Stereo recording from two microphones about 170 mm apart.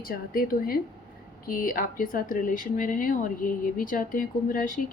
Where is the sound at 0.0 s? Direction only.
60° left (ahead or behind).